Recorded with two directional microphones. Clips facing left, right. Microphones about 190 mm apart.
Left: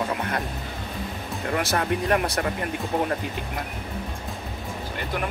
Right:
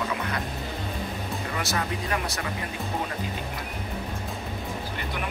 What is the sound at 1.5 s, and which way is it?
Speech, 55° left (ahead or behind).